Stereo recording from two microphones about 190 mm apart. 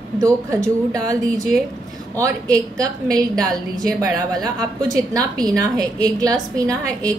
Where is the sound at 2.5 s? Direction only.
20° right (ahead or behind).